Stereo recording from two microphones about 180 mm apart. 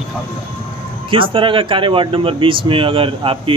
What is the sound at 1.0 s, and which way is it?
Speech, 30° right (ahead or behind).